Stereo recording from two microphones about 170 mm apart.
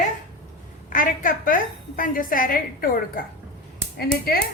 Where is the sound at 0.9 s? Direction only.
55° left (ahead or behind).